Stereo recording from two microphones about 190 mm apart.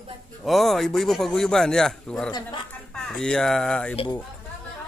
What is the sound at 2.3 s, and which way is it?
Speech, 25° left (ahead or behind).